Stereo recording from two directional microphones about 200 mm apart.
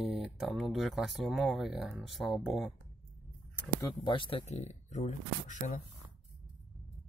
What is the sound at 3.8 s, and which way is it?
Speech, 25° left (ahead or behind).